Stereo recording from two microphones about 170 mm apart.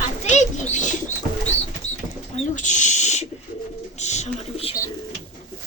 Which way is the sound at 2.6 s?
45° left (ahead or behind).